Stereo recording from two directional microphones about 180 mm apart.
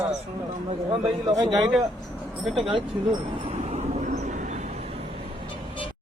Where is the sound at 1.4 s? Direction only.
Centre (ahead or behind).